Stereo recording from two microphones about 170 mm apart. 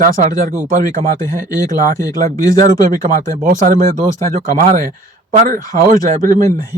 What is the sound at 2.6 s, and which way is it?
Speech, 50° right (ahead or behind).